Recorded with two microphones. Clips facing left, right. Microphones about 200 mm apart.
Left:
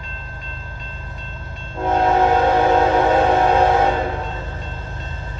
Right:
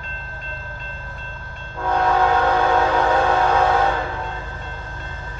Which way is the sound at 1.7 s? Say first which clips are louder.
Left 3 dB; 25° left (ahead or behind).